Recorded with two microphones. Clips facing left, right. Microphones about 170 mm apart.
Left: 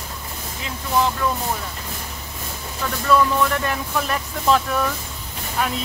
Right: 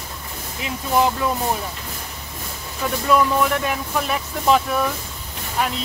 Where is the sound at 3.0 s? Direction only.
10° right (ahead or behind).